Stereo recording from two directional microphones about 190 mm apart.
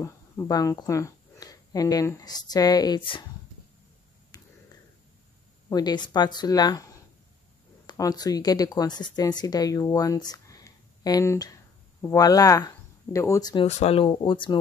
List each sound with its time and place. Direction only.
0.0 s speech: 15° left (ahead or behind)
4.3 s a sound: 20° left (ahead or behind)
5.7 s speech: 20° left (ahead or behind)
13.7 s speech: 35° left (ahead or behind)